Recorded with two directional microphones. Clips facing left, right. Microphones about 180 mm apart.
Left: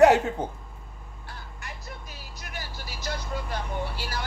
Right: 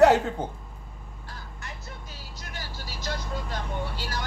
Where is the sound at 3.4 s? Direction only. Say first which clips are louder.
Left 1 dB; 10° left (ahead or behind).